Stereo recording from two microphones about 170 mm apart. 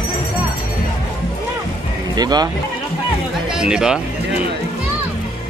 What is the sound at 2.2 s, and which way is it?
Speech, 25° right (ahead or behind).